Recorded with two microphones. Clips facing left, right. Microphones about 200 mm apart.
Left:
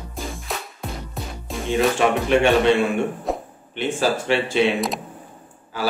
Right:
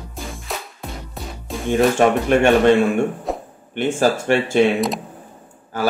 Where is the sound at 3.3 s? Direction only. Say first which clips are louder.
Even; centre (ahead or behind).